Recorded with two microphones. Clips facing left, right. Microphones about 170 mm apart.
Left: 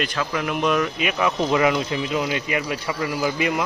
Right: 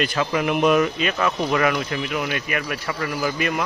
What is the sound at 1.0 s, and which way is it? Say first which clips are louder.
Speech: even; 15° left (ahead or behind).